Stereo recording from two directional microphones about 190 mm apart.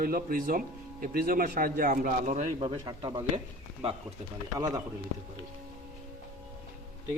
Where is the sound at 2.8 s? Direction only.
25° right (ahead or behind).